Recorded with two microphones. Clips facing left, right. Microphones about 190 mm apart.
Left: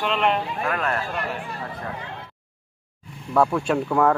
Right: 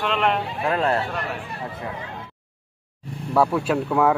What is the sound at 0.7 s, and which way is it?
Speech, 30° right (ahead or behind).